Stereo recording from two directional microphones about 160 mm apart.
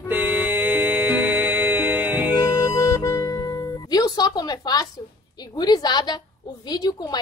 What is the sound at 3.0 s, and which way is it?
Music, 20° left (ahead or behind).